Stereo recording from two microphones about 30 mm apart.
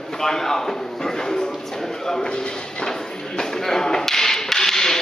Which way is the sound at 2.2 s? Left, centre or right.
Left.